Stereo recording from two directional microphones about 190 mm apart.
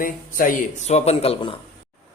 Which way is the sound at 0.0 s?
45° left (ahead or behind).